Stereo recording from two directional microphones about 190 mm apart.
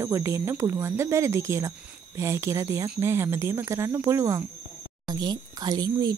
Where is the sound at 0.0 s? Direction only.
15° right (ahead or behind).